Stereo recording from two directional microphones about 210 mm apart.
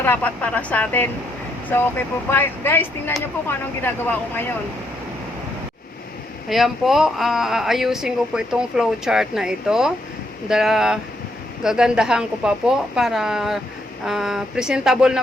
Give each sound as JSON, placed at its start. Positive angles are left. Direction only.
{"t": 0.0, "sound": "speech", "side_deg": 10}
{"t": 6.5, "sound": "speech", "side_deg": 0}